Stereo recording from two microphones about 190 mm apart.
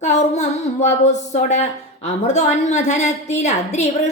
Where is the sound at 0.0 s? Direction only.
35° left (ahead or behind).